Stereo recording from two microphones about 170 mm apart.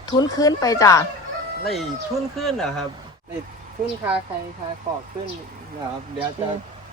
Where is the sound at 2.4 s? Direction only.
Centre (ahead or behind).